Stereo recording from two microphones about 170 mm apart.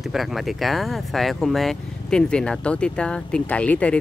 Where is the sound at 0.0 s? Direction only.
Centre (ahead or behind).